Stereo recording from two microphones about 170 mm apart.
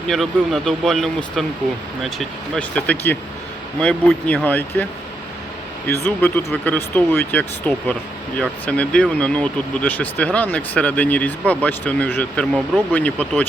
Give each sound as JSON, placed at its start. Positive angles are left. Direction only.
{"t": 0.1, "sound": "speech", "side_deg": 0}
{"t": 5.9, "sound": "speech", "side_deg": 15}